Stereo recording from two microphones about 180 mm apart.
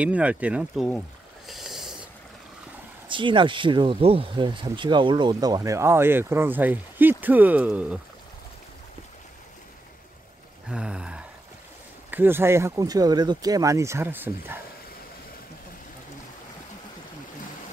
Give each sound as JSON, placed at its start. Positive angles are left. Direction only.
{"t": 0.0, "sound": "speech", "side_deg": -5}
{"t": 1.5, "sound": "snort", "side_deg": 0}
{"t": 3.1, "sound": "speech", "side_deg": -25}
{"t": 10.7, "sound": "a sound", "side_deg": -5}
{"t": 12.1, "sound": "speech", "side_deg": -10}